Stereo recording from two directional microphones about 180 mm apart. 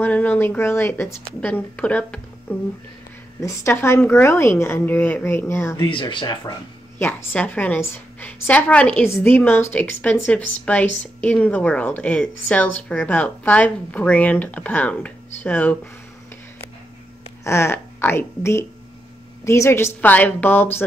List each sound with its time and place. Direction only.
0.0 s a woman's voice: 10° left (ahead or behind)
5.9 s speech: 25° left (ahead or behind)
7.0 s a woman's voice: 10° left (ahead or behind)
17.4 s a woman's voice: 15° left (ahead or behind)